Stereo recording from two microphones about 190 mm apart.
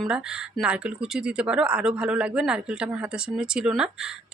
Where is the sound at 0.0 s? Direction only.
Centre (ahead or behind).